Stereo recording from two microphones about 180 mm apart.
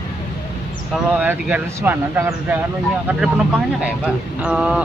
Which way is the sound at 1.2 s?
10° right (ahead or behind).